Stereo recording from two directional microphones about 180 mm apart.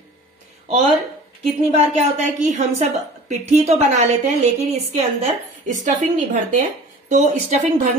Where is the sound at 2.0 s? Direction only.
40° right (ahead or behind).